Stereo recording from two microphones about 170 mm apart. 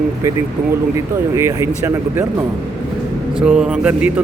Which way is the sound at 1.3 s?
15° right (ahead or behind).